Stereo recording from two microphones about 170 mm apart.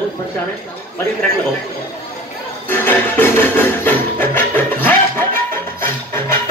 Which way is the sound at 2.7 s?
10° left (ahead or behind).